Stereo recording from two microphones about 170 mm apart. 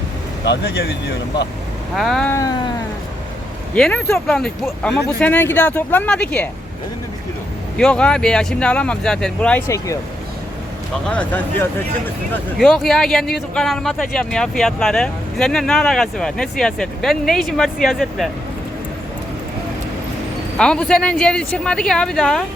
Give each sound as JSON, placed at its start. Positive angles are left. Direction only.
{"t": 0.4, "sound": "speech", "side_deg": 80}
{"t": 2.0, "sound": "speech", "side_deg": 0}
{"t": 2.3, "sound": "a sound", "side_deg": 20}
{"t": 3.8, "sound": "speech", "side_deg": 5}
{"t": 7.8, "sound": "speech", "side_deg": 5}
{"t": 11.1, "sound": "speech", "side_deg": 10}
{"t": 20.6, "sound": "speech", "side_deg": 5}